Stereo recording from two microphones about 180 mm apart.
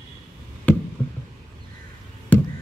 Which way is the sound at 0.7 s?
10° left (ahead or behind).